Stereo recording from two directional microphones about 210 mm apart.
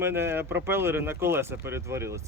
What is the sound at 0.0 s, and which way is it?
Speech, 10° right (ahead or behind).